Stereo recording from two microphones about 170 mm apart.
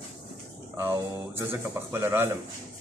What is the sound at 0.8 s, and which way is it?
Speech, 15° right (ahead or behind).